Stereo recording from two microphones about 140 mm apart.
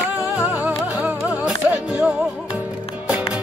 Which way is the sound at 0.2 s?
10° right (ahead or behind).